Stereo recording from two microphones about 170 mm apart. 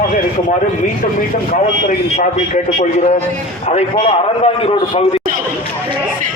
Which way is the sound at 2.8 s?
45° left (ahead or behind).